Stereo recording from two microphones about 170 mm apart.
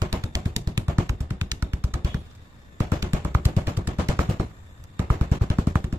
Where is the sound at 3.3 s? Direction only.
10° right (ahead or behind).